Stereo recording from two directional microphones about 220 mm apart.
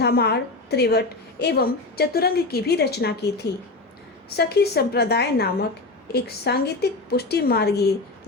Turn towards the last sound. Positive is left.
turn(degrees=45)  # may be behind; listen again after turning